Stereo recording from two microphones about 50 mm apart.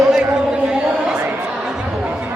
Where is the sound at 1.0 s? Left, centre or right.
Right.